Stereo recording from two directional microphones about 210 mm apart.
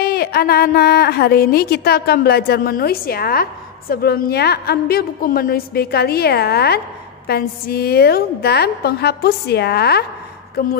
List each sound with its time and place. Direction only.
0.0 s a woman's voice: 45° left (ahead or behind)